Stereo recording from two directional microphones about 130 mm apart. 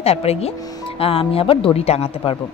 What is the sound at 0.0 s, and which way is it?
Speech, 50° left (ahead or behind).